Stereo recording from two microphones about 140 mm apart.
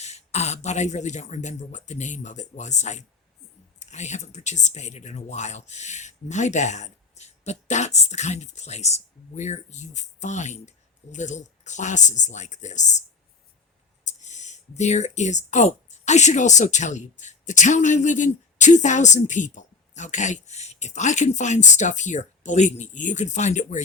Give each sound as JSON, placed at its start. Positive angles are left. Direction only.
{"t": 0.0, "sound": "speech", "side_deg": 50}